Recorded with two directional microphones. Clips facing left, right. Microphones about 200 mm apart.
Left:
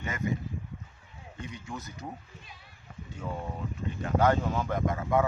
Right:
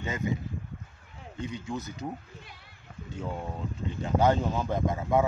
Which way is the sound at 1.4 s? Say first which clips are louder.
Right 6 dB; 25° right (ahead or behind).